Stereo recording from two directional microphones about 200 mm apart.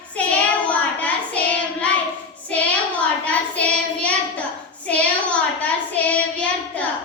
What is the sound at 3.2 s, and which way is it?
Child singing, 5° left (ahead or behind).